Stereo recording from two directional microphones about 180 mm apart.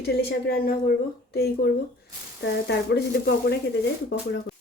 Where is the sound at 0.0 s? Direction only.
65° left (ahead or behind).